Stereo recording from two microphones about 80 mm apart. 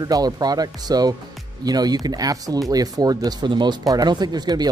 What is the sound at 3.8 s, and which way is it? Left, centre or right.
Speech, right.